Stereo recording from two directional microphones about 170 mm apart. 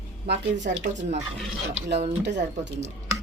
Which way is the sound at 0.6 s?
45° right (ahead or behind).